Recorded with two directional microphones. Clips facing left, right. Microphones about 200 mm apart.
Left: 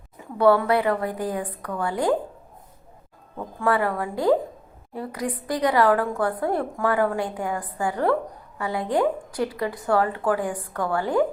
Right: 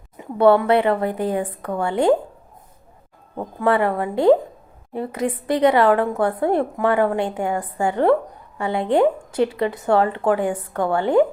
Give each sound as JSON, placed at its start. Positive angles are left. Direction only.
{"t": 0.2, "sound": "speech", "side_deg": -25}
{"t": 3.6, "sound": "speech", "side_deg": -25}